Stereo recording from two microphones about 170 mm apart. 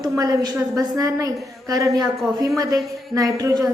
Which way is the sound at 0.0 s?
20° right (ahead or behind).